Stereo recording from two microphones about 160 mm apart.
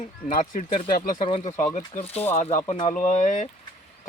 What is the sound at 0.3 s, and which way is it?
Speech, 55° left (ahead or behind).